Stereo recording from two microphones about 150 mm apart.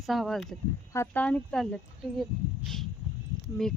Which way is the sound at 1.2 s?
5° left (ahead or behind).